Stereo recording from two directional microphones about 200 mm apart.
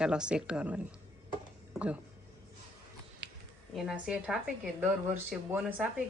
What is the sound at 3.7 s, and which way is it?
Speech, 5° right (ahead or behind).